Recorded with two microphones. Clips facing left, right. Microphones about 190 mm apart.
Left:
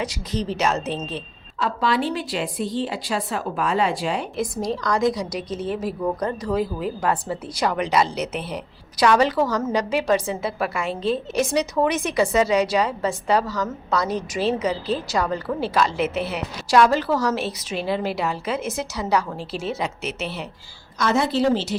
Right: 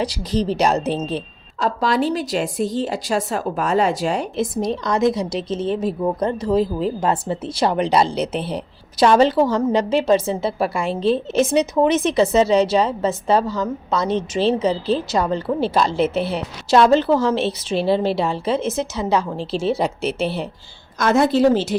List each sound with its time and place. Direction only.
0.0 s a woman's voice: 35° right (ahead or behind)
4.4 s a woman's voice: 20° right (ahead or behind)
10.8 s a woman's voice: centre (ahead or behind)
11.3 s a woman's voice: 20° right (ahead or behind)
21.0 s a woman's voice: 50° right (ahead or behind)